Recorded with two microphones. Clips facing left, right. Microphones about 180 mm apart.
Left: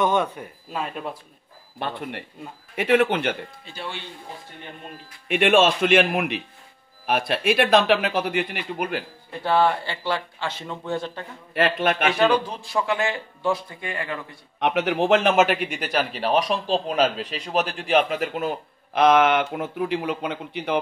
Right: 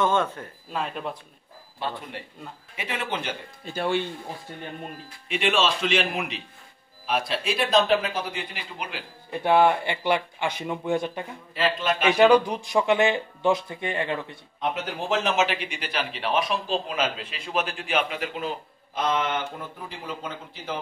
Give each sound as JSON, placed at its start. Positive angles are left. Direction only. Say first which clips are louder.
{"t": 0.0, "sound": "speech", "louder": "left 2 dB", "side_deg": 15}
{"t": 1.8, "sound": "speech", "louder": "left 3 dB", "side_deg": 60}
{"t": 3.7, "sound": "speech", "louder": "right 10 dB", "side_deg": -50}
{"t": 5.3, "sound": "speech", "louder": "left 6 dB", "side_deg": 55}
{"t": 9.3, "sound": "speech", "louder": "right 1 dB", "side_deg": -15}
{"t": 11.5, "sound": "speech", "louder": "left 3 dB", "side_deg": 60}
{"t": 12.1, "sound": "speech", "louder": "right 8 dB", "side_deg": -15}
{"t": 14.6, "sound": "a man's voice", "louder": "left 8 dB", "side_deg": 70}
{"t": 18.9, "sound": "speech", "louder": "left 9 dB", "side_deg": 80}